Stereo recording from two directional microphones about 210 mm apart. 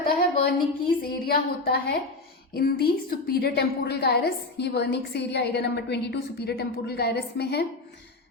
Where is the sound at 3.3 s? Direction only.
50° left (ahead or behind).